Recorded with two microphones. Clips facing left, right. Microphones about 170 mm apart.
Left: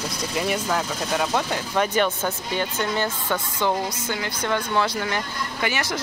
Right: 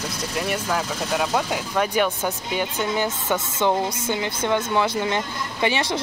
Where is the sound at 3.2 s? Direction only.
20° right (ahead or behind).